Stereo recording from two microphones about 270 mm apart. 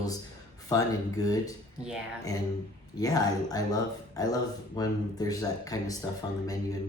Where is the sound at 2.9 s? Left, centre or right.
Centre.